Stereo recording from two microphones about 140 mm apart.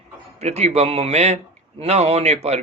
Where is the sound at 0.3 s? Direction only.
50° right (ahead or behind).